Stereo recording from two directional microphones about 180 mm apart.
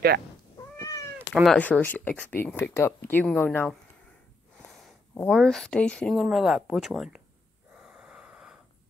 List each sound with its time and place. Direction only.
0.7 s cat: 20° left (ahead or behind)
1.3 s speech: centre (ahead or behind)
5.3 s speech: 5° left (ahead or behind)
7.7 s gasp: 5° right (ahead or behind)